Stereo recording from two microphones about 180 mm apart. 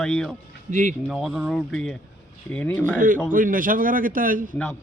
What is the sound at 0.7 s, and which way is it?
Speech, 45° right (ahead or behind).